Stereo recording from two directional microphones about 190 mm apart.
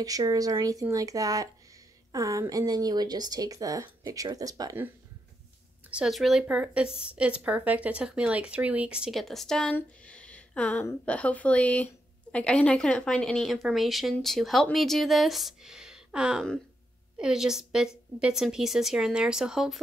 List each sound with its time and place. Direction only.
0.0 s a woman's voice: 20° right (ahead or behind)
5.9 s speech: 5° right (ahead or behind)